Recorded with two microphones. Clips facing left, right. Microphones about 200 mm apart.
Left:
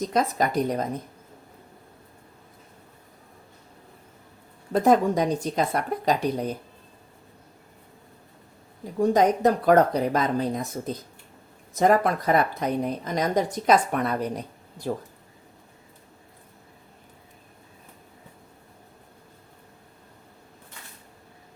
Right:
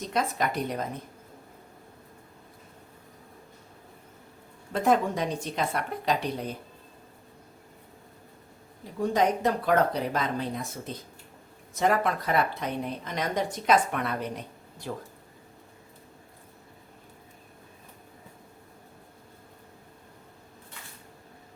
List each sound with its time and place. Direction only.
0.0 s speech: 40° left (ahead or behind)
4.7 s speech: 40° left (ahead or behind)
9.0 s speech: 40° left (ahead or behind)